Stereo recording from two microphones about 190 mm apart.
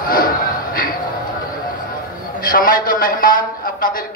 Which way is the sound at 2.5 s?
45° left (ahead or behind).